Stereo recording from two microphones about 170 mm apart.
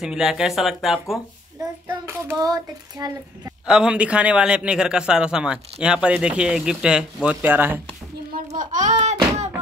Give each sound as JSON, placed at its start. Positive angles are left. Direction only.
{"t": 0.0, "sound": "a man's voice", "side_deg": 0}
{"t": 1.9, "sound": "child singing", "side_deg": -15}
{"t": 3.6, "sound": "a man's voice", "side_deg": -5}
{"t": 7.2, "sound": "child singing", "side_deg": -10}
{"t": 8.5, "sound": "a sound", "side_deg": -45}